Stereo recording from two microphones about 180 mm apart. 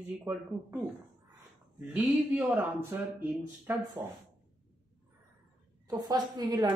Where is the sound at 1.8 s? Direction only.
10° right (ahead or behind).